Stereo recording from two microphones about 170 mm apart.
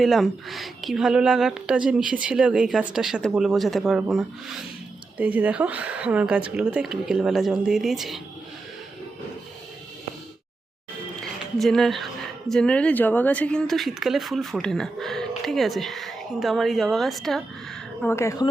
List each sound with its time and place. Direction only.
0.0 s speech: centre (ahead or behind)
11.5 s speech: centre (ahead or behind)
18.0 s speech: 15° left (ahead or behind)